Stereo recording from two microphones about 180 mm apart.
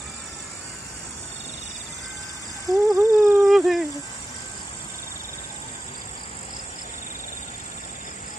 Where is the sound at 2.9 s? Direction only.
15° right (ahead or behind).